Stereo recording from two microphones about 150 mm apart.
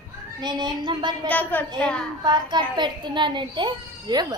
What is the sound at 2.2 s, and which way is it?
A child's voice, 30° right (ahead or behind).